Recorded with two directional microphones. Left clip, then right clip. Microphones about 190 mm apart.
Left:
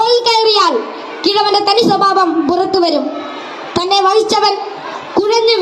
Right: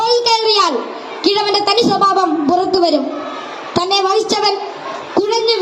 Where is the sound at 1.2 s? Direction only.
15° left (ahead or behind).